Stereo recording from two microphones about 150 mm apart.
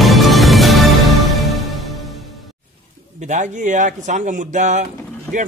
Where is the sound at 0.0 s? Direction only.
Centre (ahead or behind).